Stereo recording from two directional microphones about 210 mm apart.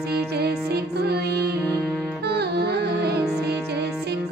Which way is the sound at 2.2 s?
50° right (ahead or behind).